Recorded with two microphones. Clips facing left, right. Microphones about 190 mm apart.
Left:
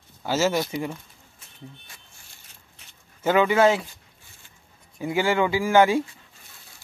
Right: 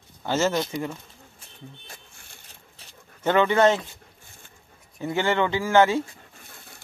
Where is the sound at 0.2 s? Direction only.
5° left (ahead or behind).